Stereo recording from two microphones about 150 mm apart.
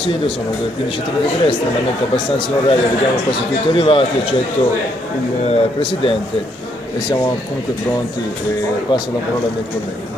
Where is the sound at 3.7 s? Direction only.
35° left (ahead or behind).